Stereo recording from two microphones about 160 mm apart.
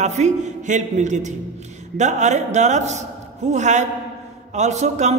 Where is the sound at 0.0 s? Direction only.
45° right (ahead or behind).